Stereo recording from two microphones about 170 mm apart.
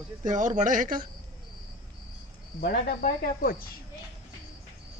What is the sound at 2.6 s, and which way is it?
Speech, 70° left (ahead or behind).